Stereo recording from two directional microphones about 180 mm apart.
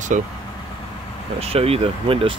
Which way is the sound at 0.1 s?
40° right (ahead or behind).